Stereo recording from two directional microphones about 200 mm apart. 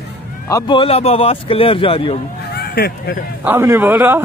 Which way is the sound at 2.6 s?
50° left (ahead or behind).